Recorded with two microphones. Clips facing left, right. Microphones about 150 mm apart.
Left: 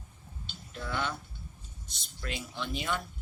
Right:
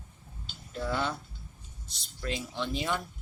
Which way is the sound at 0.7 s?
35° right (ahead or behind).